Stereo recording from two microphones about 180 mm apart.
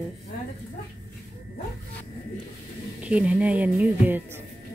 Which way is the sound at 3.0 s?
5° right (ahead or behind).